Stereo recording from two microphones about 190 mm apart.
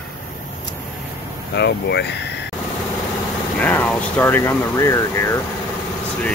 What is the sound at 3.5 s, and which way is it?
Speech, 10° left (ahead or behind).